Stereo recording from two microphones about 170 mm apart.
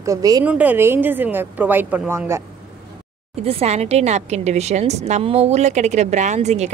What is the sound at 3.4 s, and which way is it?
A woman's voice, 35° right (ahead or behind).